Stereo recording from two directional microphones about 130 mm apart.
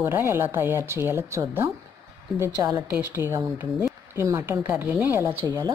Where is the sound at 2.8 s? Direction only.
15° right (ahead or behind).